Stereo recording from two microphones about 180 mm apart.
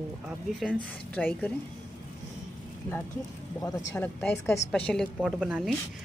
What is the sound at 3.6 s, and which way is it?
Speech, 20° left (ahead or behind).